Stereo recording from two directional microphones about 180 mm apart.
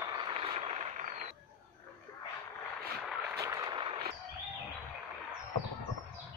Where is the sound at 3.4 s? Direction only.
20° right (ahead or behind).